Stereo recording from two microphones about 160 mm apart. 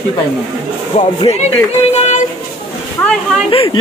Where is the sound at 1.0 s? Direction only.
35° left (ahead or behind).